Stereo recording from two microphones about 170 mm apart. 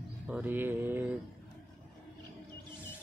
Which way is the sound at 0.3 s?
10° right (ahead or behind).